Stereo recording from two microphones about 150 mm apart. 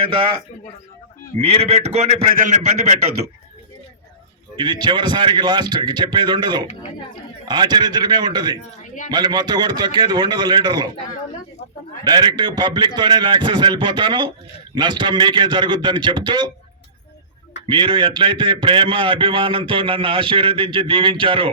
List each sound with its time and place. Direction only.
0.1 s a man's voice: 35° right (ahead or behind)
1.4 s a man's voice: 40° right (ahead or behind)
4.5 s a man's voice: 30° right (ahead or behind)
12.0 s a man's voice: 30° right (ahead or behind)
17.7 s a man's voice: 30° right (ahead or behind)